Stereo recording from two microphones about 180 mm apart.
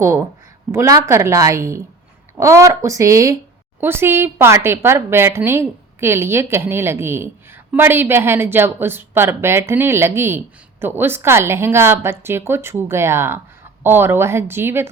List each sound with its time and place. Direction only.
0.0 s speech: 15° right (ahead or behind)